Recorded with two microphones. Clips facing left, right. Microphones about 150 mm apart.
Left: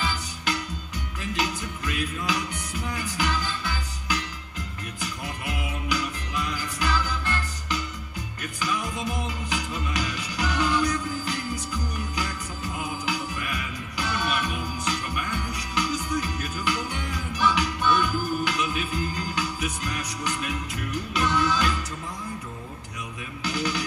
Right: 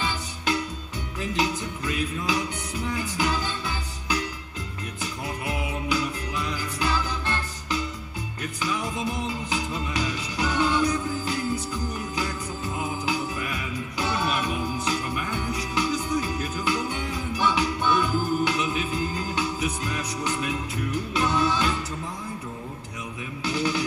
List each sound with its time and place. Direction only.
0.0 s music: 25° right (ahead or behind)
23.4 s music: 25° right (ahead or behind)